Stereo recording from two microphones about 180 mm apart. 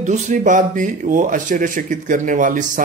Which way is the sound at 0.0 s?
45° right (ahead or behind).